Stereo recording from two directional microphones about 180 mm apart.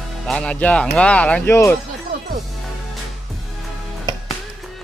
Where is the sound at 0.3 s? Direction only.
5° left (ahead or behind).